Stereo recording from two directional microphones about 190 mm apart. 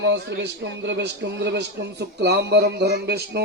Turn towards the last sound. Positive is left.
turn(degrees=-55)  # may be behind; listen again after turning